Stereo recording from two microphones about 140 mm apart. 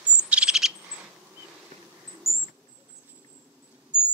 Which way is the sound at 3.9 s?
5° right (ahead or behind).